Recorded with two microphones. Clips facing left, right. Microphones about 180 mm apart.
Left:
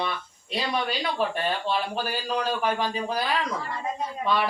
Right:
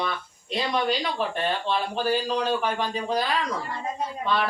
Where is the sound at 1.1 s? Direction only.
5° left (ahead or behind).